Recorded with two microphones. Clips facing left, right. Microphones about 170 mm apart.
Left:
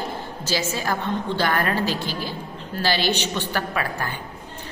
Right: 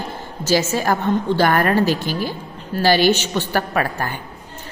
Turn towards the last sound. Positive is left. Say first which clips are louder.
# right 5 dB
turn(degrees=-45)  # may be behind; listen again after turning